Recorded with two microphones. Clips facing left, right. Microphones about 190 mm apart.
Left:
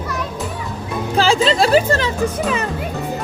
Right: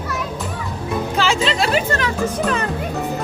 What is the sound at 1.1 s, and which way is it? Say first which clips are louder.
Speech: left 6 dB; 35° left (ahead or behind).